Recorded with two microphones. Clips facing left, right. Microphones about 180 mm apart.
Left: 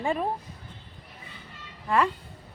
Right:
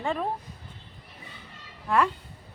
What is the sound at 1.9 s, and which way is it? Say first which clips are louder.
Speech: even; 5° left (ahead or behind).